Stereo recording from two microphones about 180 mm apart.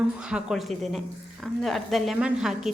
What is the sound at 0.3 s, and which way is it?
Speech, 5° right (ahead or behind).